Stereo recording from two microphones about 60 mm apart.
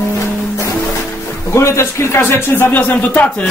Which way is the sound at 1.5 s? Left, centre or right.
Left.